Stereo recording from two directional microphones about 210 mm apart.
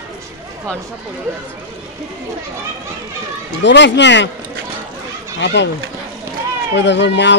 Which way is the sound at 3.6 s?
60° left (ahead or behind).